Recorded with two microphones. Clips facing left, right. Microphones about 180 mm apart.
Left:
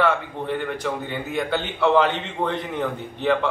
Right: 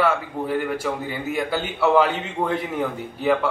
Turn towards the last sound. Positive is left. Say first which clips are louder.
# right 1 dB
turn(degrees=-5)  # may be behind; listen again after turning